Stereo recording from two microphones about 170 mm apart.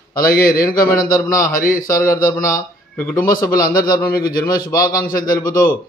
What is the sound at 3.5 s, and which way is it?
A man's voice, 60° left (ahead or behind).